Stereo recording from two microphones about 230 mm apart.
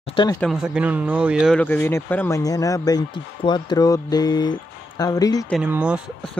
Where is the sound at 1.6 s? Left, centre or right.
Centre.